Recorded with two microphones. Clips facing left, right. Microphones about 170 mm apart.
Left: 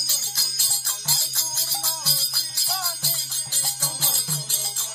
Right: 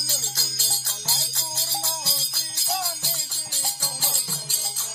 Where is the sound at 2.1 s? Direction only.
20° right (ahead or behind).